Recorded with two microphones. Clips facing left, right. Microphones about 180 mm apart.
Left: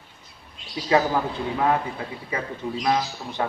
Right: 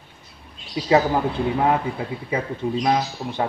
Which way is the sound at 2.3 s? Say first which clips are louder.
Right 5 dB; 25° right (ahead or behind).